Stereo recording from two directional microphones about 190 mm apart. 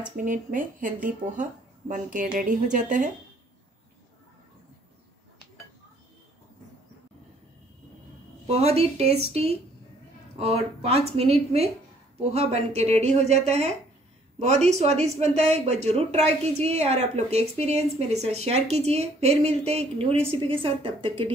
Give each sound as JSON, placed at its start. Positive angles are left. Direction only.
{"t": 0.1, "sound": "speech", "side_deg": -45}
{"t": 8.5, "sound": "a woman's voice", "side_deg": -35}